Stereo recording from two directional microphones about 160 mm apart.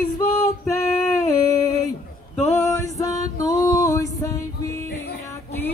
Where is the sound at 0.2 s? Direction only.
20° left (ahead or behind).